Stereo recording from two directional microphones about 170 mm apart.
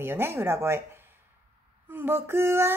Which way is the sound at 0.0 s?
15° right (ahead or behind).